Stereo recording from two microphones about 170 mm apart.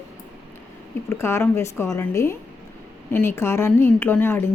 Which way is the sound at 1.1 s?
15° left (ahead or behind).